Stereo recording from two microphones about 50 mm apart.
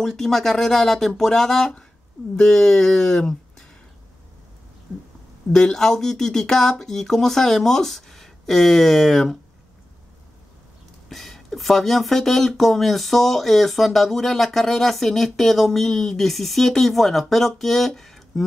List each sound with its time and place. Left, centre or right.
0.0 s speech: centre
5.5 s speech: centre
11.1 s speech: centre